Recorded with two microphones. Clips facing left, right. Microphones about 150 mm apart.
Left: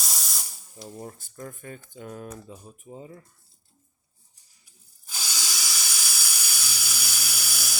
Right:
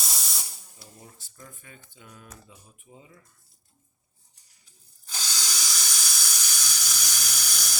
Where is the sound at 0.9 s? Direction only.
50° left (ahead or behind).